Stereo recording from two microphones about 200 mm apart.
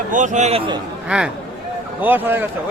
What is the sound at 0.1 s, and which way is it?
Speech, 40° right (ahead or behind).